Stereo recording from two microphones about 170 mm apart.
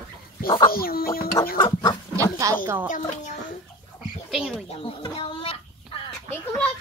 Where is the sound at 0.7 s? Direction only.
60° left (ahead or behind).